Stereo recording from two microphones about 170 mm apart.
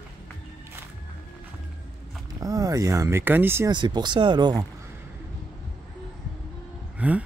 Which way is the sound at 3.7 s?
25° right (ahead or behind).